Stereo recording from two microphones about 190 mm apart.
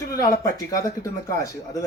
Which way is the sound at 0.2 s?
20° left (ahead or behind).